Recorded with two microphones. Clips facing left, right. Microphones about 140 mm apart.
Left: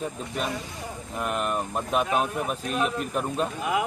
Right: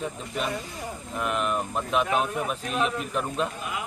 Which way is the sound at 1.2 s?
40° left (ahead or behind).